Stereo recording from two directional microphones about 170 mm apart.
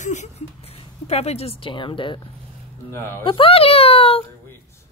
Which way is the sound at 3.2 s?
30° left (ahead or behind).